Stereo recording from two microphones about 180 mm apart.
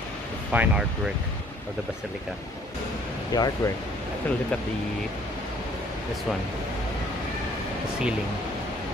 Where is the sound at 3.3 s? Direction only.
20° left (ahead or behind).